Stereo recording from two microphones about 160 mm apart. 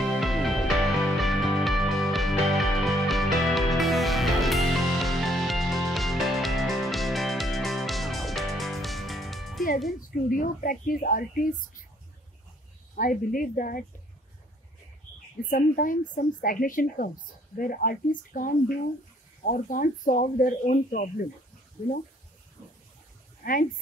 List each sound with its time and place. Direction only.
0.2 s music: centre (ahead or behind)
9.9 s speech: 55° left (ahead or behind)
12.9 s speech: 60° left (ahead or behind)
15.5 s speech: 60° left (ahead or behind)
23.4 s speech: 60° left (ahead or behind)